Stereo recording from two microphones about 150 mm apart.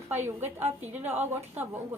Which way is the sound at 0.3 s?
15° right (ahead or behind).